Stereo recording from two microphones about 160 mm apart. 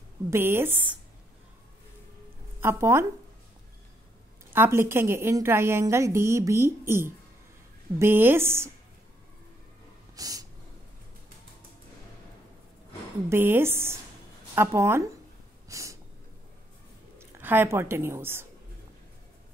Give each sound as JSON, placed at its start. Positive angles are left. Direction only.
{"t": 0.3, "sound": "a woman's voice", "side_deg": -15}
{"t": 2.6, "sound": "a woman's voice", "side_deg": -15}
{"t": 4.5, "sound": "a woman's voice", "side_deg": -15}
{"t": 10.1, "sound": "snort", "side_deg": -20}
{"t": 13.3, "sound": "a woman's voice", "side_deg": -15}
{"t": 15.7, "sound": "a sound", "side_deg": -20}
{"t": 17.2, "sound": "speech", "side_deg": -10}